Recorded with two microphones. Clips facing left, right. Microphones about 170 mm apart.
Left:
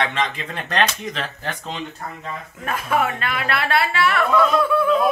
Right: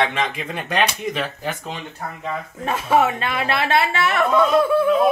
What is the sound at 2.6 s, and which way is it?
A woman's voice, 25° right (ahead or behind).